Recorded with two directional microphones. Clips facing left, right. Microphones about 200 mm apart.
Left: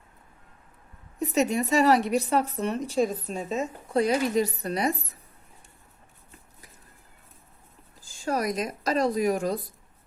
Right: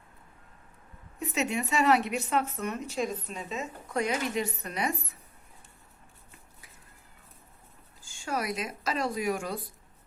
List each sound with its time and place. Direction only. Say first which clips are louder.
1.2 s speech: left 6 dB; 40° left (ahead or behind)
8.0 s speech: left 5 dB; 35° left (ahead or behind)